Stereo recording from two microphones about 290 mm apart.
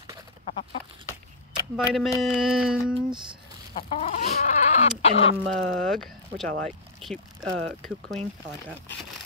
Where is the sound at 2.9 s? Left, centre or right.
Centre.